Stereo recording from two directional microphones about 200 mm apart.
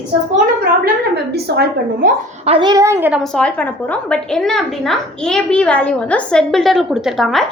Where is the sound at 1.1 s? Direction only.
55° right (ahead or behind).